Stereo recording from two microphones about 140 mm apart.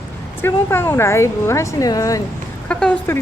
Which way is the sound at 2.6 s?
10° left (ahead or behind).